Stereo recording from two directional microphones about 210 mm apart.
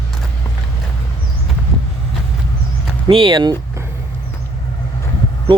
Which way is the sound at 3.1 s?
25° right (ahead or behind).